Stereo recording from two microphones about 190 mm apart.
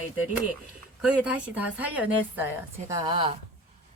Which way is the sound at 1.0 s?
5° right (ahead or behind).